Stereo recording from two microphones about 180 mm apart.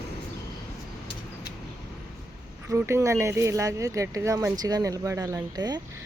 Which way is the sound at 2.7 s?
15° right (ahead or behind).